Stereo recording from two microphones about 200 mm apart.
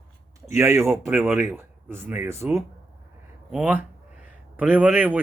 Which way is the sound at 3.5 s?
5° right (ahead or behind).